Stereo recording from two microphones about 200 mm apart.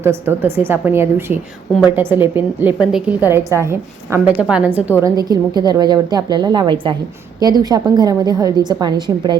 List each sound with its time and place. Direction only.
0.0 s a woman's voice: 10° right (ahead or behind)